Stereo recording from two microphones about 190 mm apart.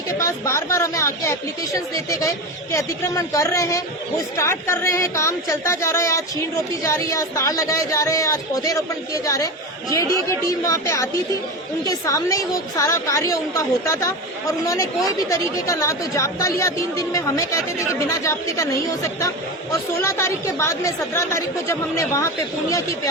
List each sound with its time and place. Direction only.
0.2 s a woman's voice: 15° left (ahead or behind)
10.7 s a woman's voice: 15° left (ahead or behind)
20.0 s a woman's voice: 15° left (ahead or behind)